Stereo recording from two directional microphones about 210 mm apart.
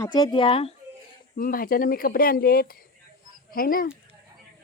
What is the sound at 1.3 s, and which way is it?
Speech, 40° left (ahead or behind).